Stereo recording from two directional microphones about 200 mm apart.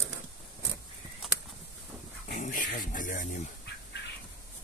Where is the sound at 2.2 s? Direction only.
40° left (ahead or behind).